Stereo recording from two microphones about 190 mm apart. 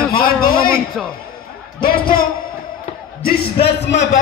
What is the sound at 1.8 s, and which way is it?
Speech, 50° left (ahead or behind).